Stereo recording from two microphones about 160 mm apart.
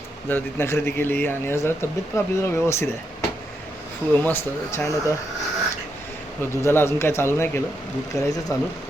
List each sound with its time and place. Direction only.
0.3 s speech: 15° left (ahead or behind)
4.1 s speech: 10° left (ahead or behind)
6.4 s speech: 15° left (ahead or behind)